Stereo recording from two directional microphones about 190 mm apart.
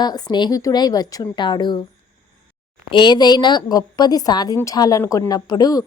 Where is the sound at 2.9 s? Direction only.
25° left (ahead or behind).